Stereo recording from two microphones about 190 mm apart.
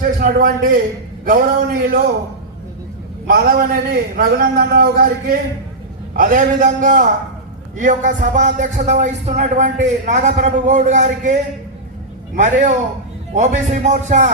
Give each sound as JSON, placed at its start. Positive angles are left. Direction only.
{"t": 0.0, "sound": "a man's voice", "side_deg": -50}
{"t": 3.2, "sound": "a man's voice", "side_deg": -50}
{"t": 12.4, "sound": "a man's voice", "side_deg": -40}